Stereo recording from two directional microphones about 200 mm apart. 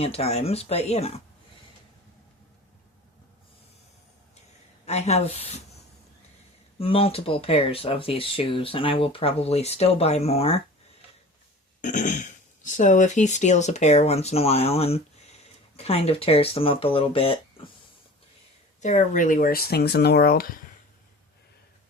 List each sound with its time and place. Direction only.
0.0 s speech: 30° left (ahead or behind)
4.9 s speech: 35° left (ahead or behind)
6.7 s speech: 30° left (ahead or behind)
11.8 s speech: 40° left (ahead or behind)
18.8 s speech: 40° left (ahead or behind)